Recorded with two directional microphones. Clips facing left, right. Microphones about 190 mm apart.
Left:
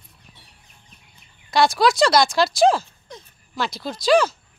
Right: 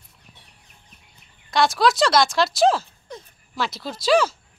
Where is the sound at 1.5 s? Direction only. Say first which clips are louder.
Left 1 dB; centre (ahead or behind).